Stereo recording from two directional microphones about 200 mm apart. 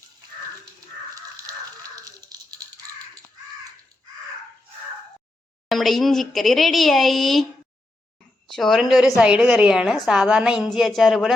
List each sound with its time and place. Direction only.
1.1 s dog: 20° right (ahead or behind)
5.6 s speech: centre (ahead or behind)
8.5 s speech: centre (ahead or behind)